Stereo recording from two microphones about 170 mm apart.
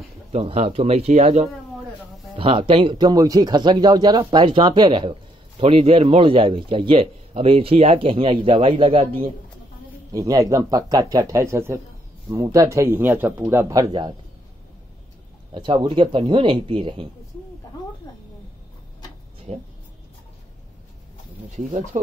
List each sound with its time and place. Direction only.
0.3 s speech: 40° right (ahead or behind)
10.1 s speech: 20° right (ahead or behind)
15.5 s speech: 30° right (ahead or behind)
18.1 s a sound: 20° left (ahead or behind)
19.5 s speech: 40° right (ahead or behind)